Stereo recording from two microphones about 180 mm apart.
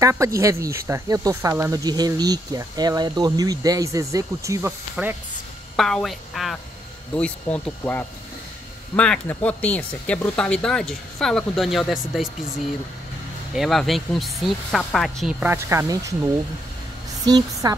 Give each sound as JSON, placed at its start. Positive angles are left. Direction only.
{"t": 0.0, "sound": "speech", "side_deg": -15}
{"t": 5.8, "sound": "speech", "side_deg": 0}
{"t": 13.6, "sound": "speech", "side_deg": 0}
{"t": 17.3, "sound": "a woman's voice", "side_deg": -20}